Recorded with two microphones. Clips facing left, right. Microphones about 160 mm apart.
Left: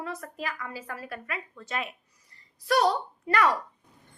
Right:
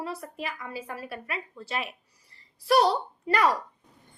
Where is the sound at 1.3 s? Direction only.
25° right (ahead or behind).